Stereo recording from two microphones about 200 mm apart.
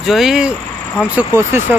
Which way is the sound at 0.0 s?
Centre (ahead or behind).